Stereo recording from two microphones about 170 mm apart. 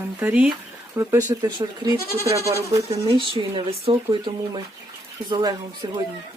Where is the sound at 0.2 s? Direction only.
10° right (ahead or behind).